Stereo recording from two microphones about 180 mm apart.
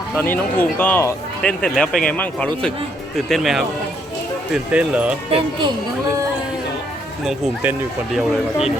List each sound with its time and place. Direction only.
0.2 s speech: 10° left (ahead or behind)
4.7 s speech: 5° right (ahead or behind)
5.3 s speech: 25° right (ahead or behind)
7.3 s speech: 5° right (ahead or behind)